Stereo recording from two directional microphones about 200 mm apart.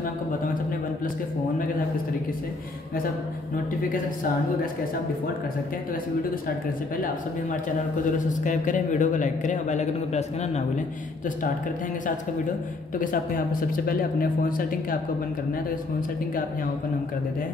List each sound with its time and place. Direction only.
8.3 s a man's voice: 40° left (ahead or behind)
13.0 s speech: 45° left (ahead or behind)